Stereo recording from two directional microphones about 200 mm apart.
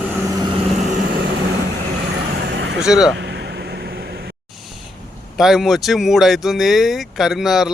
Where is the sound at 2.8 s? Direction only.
Centre (ahead or behind).